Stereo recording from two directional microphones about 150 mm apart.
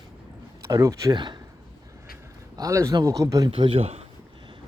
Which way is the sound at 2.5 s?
20° right (ahead or behind).